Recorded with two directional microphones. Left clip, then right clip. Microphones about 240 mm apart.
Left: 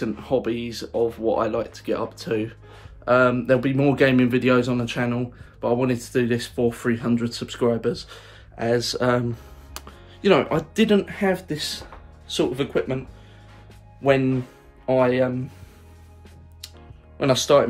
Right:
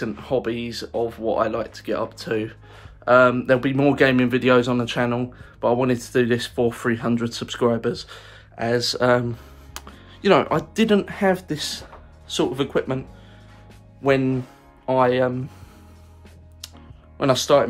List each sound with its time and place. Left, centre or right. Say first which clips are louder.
0.0 s speech: even; centre
14.0 s speech: even; centre
17.2 s speech: even; centre